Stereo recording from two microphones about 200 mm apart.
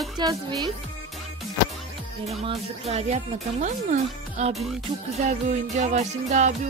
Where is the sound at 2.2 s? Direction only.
30° right (ahead or behind).